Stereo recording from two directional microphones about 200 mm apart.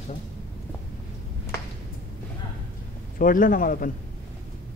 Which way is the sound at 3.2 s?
45° left (ahead or behind).